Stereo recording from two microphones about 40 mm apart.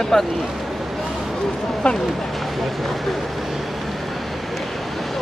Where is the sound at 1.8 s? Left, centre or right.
Left.